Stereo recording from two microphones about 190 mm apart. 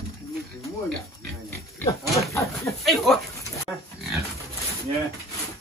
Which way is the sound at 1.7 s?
15° left (ahead or behind).